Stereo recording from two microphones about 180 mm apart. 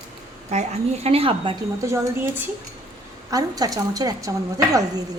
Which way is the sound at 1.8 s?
15° right (ahead or behind).